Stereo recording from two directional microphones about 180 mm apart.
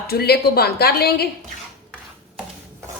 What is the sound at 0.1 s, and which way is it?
Speech, 60° left (ahead or behind).